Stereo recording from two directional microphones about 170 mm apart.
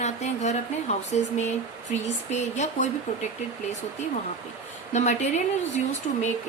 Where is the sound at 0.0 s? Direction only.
40° left (ahead or behind).